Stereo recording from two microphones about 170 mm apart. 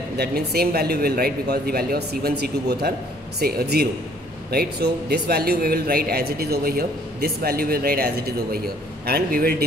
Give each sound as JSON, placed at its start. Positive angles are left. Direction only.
{"t": 0.2, "sound": "a man's voice", "side_deg": -65}